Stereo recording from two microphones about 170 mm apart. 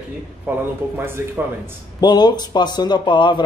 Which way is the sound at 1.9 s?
25° left (ahead or behind).